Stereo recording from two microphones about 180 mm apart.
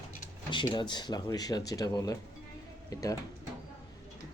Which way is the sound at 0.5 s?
25° left (ahead or behind).